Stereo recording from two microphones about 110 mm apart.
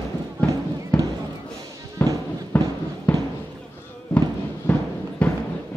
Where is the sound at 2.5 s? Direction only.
10° left (ahead or behind).